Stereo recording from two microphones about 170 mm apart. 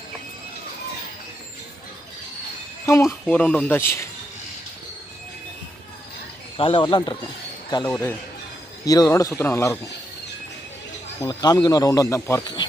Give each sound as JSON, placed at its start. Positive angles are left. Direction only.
{"t": 2.8, "sound": "speech", "side_deg": 15}
{"t": 6.6, "sound": "speech", "side_deg": 30}
{"t": 7.9, "sound": "speech", "side_deg": 15}
{"t": 11.2, "sound": "speech", "side_deg": 25}